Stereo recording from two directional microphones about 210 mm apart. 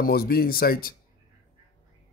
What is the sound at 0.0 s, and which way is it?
Speech, 45° left (ahead or behind).